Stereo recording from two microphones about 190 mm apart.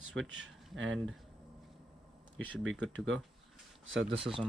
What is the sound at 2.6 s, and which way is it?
Speech, 90° right.